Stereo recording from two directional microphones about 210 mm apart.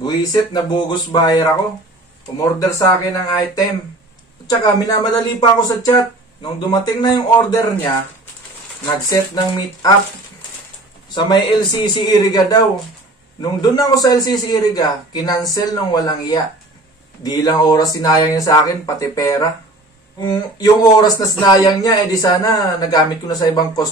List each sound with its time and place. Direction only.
0.0 s speech: 20° left (ahead or behind)
8.8 s speech: 20° left (ahead or behind)
11.1 s speech: 20° left (ahead or behind)